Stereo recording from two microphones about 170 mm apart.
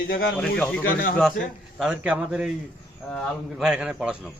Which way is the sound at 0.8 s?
55° left (ahead or behind).